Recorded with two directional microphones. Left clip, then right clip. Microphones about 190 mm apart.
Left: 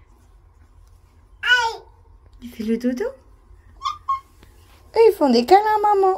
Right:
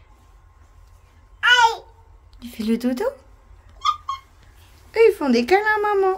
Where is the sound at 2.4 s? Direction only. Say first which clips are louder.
Even; 15° right (ahead or behind).